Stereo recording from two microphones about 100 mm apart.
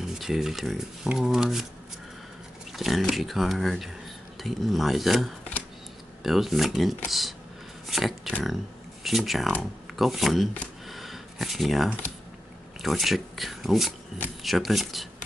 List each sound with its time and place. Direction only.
0.0 s speech: 5° right (ahead or behind)
2.7 s speech: centre (ahead or behind)
10.9 s a sound: centre (ahead or behind)
12.8 s speech: centre (ahead or behind)